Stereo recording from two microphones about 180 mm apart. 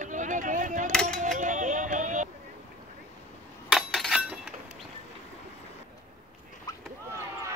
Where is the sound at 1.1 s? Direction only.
45° right (ahead or behind).